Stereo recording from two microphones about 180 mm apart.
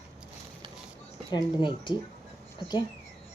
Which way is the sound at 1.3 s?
25° left (ahead or behind).